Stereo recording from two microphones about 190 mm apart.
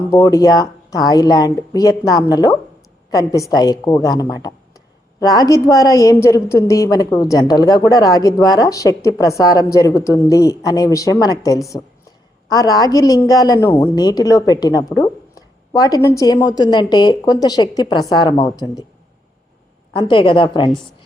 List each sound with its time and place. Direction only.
0.1 s a woman's voice: 15° left (ahead or behind)
19.9 s a woman's voice: 25° left (ahead or behind)